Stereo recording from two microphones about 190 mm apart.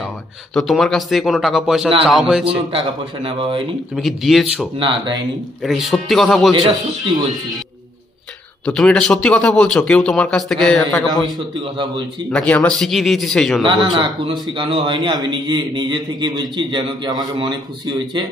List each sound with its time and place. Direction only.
0.6 s speech: centre (ahead or behind)
2.7 s a man's voice: 30° right (ahead or behind)
3.9 s speech: centre (ahead or behind)
4.7 s a man's voice: 25° right (ahead or behind)
5.6 s speech: centre (ahead or behind)
6.5 s a man's voice: 25° right (ahead or behind)
8.6 s speech: 5° left (ahead or behind)
11.2 s a man's voice: 25° right (ahead or behind)
12.3 s speech: 5° left (ahead or behind)
13.9 s a man's voice: 25° right (ahead or behind)